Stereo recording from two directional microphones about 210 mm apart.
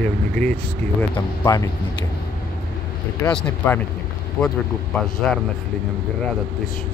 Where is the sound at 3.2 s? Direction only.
5° left (ahead or behind).